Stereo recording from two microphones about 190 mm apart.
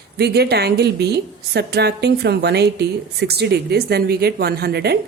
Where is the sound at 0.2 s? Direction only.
60° right (ahead or behind).